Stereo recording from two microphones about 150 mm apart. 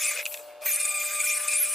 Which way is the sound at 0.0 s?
Centre (ahead or behind).